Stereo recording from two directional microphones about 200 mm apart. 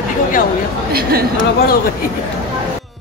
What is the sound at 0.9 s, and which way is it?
Speech, 50° right (ahead or behind).